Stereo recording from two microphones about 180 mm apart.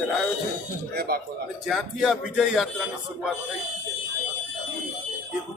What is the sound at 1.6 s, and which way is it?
Speech, centre (ahead or behind).